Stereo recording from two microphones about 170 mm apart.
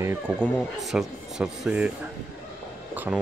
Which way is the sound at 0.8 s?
5° right (ahead or behind).